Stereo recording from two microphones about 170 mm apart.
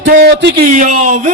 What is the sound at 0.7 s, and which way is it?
Speech, 50° right (ahead or behind).